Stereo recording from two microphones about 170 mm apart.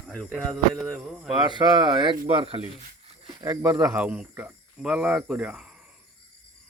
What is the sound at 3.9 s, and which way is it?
Speech, 5° right (ahead or behind).